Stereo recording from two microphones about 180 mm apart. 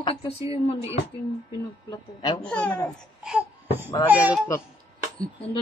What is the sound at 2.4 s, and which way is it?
Speech, 5° left (ahead or behind).